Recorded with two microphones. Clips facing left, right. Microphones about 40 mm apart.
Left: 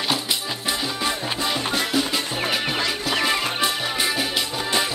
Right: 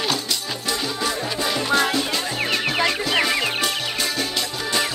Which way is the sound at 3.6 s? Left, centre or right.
Left.